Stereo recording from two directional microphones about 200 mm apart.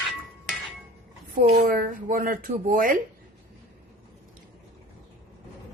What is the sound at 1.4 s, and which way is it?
Speech, 45° right (ahead or behind).